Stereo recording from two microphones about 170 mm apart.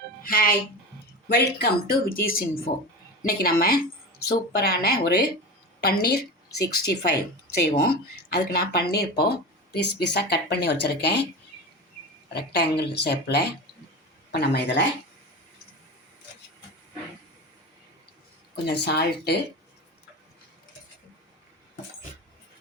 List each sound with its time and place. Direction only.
0.2 s speech: 60° left (ahead or behind)
1.3 s a woman's voice: 70° left (ahead or behind)
9.7 s speech: 80° left
12.3 s a woman's voice: 75° left (ahead or behind)
18.5 s a woman's voice: 75° left (ahead or behind)